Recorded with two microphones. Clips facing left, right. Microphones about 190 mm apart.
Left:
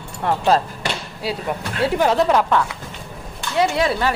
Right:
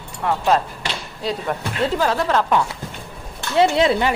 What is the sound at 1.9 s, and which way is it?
Speech, 20° left (ahead or behind).